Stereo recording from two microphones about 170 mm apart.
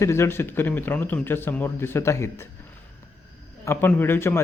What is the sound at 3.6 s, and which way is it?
Speech, 15° left (ahead or behind).